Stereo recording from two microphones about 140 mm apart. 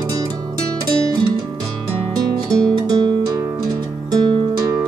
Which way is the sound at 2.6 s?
30° right (ahead or behind).